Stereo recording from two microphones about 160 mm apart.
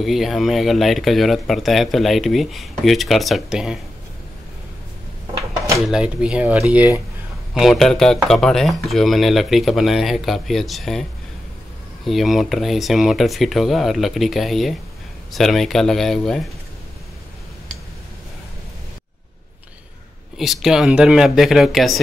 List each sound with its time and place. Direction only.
0.0 s speech: centre (ahead or behind)
5.9 s speech: 5° right (ahead or behind)
20.3 s speech: centre (ahead or behind)